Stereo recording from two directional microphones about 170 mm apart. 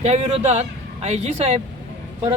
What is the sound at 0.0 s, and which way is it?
Speech, 40° right (ahead or behind).